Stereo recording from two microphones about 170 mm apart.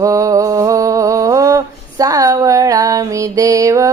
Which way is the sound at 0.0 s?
20° right (ahead or behind).